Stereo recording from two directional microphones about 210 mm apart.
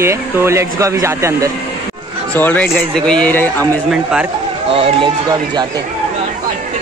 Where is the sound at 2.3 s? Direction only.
10° left (ahead or behind).